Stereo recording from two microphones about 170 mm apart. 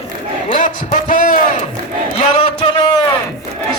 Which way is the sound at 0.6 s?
50° left (ahead or behind).